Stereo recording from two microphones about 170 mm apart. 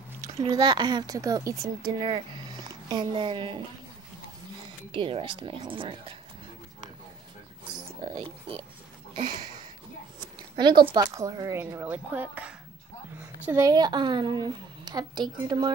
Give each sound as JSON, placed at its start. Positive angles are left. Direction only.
{"t": 0.5, "sound": "speech", "side_deg": -25}
{"t": 4.9, "sound": "speech", "side_deg": -30}
{"t": 7.7, "sound": "a sound", "side_deg": -25}
{"t": 10.9, "sound": "speech", "side_deg": -20}
{"t": 13.5, "sound": "speech", "side_deg": -20}